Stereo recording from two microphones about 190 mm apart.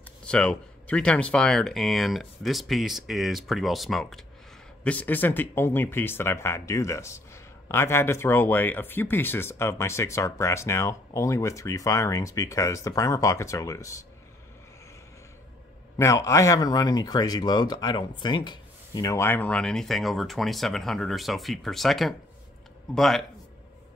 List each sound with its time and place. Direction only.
0.2 s speech: 5° left (ahead or behind)
16.0 s speech: 15° left (ahead or behind)